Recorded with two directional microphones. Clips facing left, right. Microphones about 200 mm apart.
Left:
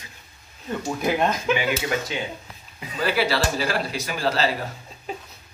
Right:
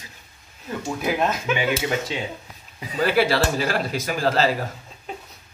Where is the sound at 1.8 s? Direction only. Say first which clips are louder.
Right 1 dB; 25° right (ahead or behind).